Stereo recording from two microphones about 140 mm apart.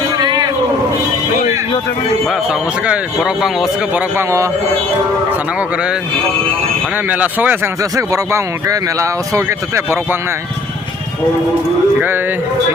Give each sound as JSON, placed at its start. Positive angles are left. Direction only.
{"t": 0.2, "sound": "a sound", "side_deg": -30}
{"t": 2.2, "sound": "speech", "side_deg": -5}
{"t": 4.2, "sound": "speech", "side_deg": -20}
{"t": 5.5, "sound": "speech", "side_deg": -5}
{"t": 11.9, "sound": "speech", "side_deg": -15}